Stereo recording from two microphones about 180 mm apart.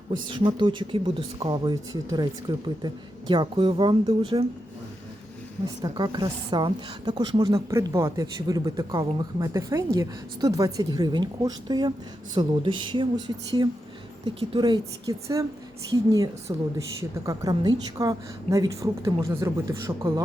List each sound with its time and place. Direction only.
0.3 s a woman's voice: 25° right (ahead or behind)
5.8 s a woman's voice: 25° right (ahead or behind)